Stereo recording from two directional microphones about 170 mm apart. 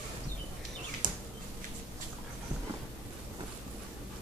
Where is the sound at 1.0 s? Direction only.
50° right (ahead or behind).